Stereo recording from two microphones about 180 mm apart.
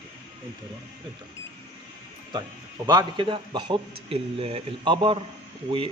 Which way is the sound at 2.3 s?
25° right (ahead or behind).